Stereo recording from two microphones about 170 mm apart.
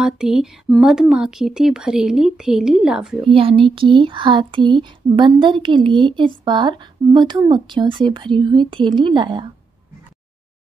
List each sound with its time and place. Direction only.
0.0 s speech: 5° right (ahead or behind)
3.3 s speech: 35° right (ahead or behind)